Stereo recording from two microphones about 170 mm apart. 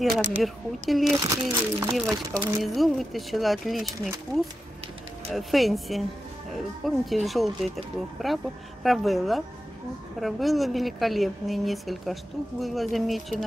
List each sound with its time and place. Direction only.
0.4 s a woman's voice: centre (ahead or behind)
1.2 s speech: 15° right (ahead or behind)
2.6 s a woman's voice: centre (ahead or behind)
5.3 s a woman's voice: centre (ahead or behind)